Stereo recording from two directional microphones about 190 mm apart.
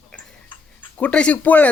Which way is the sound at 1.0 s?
5° left (ahead or behind).